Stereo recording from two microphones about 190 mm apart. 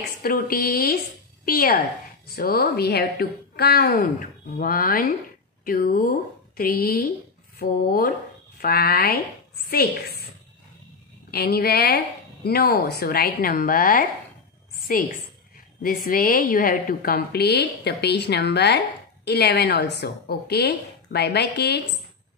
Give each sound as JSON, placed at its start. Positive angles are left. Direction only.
{"t": 0.2, "sound": "a woman's voice", "side_deg": 50}
{"t": 11.2, "sound": "a woman's voice", "side_deg": 55}